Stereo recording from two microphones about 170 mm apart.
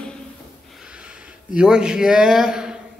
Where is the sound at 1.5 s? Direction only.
5° right (ahead or behind).